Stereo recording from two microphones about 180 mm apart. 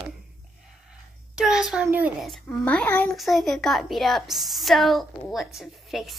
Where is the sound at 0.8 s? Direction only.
5° right (ahead or behind).